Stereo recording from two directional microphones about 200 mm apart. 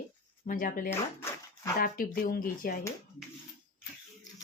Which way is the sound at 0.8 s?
10° left (ahead or behind).